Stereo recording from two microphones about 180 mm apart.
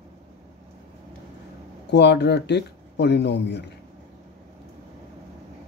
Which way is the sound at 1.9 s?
70° left (ahead or behind).